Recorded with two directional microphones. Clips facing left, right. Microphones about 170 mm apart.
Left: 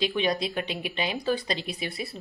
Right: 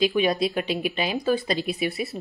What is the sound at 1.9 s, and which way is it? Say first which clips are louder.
Speech: right 6 dB; 20° right (ahead or behind).